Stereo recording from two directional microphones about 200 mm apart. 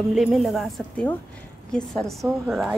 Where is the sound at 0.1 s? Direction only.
Centre (ahead or behind).